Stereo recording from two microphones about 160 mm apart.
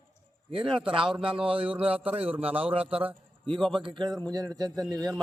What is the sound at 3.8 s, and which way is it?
A man's voice, 30° right (ahead or behind).